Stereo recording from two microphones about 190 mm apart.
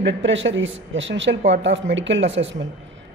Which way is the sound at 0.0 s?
75° right (ahead or behind).